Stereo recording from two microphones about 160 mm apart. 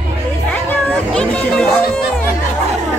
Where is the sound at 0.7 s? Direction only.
5° left (ahead or behind).